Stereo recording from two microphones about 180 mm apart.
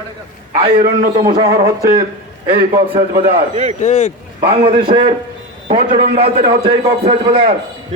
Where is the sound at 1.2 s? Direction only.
30° right (ahead or behind).